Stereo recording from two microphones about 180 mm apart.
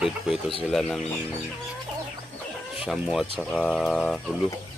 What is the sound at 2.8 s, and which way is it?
Speech, centre (ahead or behind).